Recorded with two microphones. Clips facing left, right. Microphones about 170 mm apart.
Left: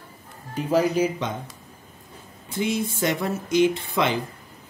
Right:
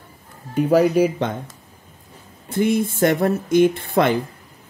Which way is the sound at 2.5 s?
55° right (ahead or behind).